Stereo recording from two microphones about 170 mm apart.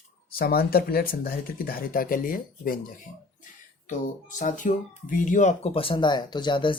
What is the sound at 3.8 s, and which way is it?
Speech, 50° left (ahead or behind).